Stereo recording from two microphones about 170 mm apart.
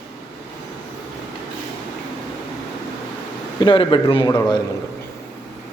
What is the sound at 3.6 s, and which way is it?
A man's voice, 30° left (ahead or behind).